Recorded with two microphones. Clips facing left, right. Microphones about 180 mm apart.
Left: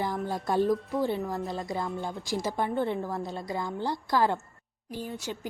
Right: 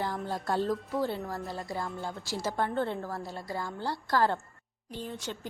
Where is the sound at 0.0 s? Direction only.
15° left (ahead or behind).